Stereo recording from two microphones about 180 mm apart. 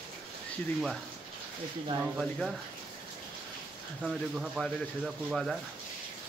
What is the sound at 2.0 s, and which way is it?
Speech, centre (ahead or behind).